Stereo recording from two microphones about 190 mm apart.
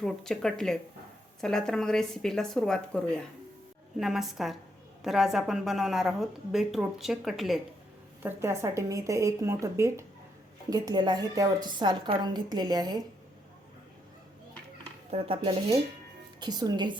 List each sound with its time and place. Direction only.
0.0 s a woman's voice: 5° left (ahead or behind)
8.2 s a woman's voice: 15° right (ahead or behind)
15.1 s a woman's voice: 25° right (ahead or behind)